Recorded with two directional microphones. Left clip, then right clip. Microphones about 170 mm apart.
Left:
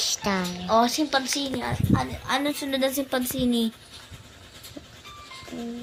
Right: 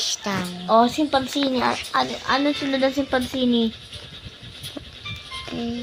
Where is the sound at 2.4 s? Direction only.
Centre (ahead or behind).